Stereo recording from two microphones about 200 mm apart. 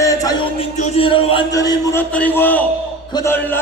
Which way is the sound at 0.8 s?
25° left (ahead or behind).